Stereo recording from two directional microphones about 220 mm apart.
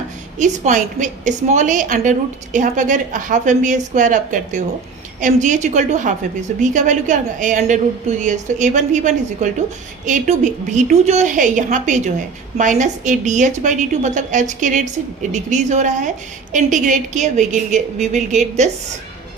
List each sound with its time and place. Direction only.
0.3 s a woman's voice: 35° right (ahead or behind)